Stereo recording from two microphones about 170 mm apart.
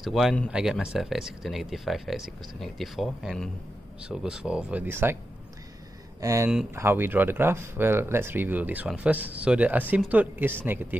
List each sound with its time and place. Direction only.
0.0 s speech: centre (ahead or behind)
6.2 s speech: 15° right (ahead or behind)